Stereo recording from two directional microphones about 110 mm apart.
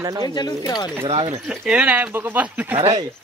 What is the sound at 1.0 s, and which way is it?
Speech, 55° right (ahead or behind).